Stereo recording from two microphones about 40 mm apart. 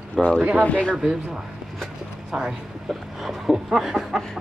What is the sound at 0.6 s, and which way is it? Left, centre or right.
Speech, left.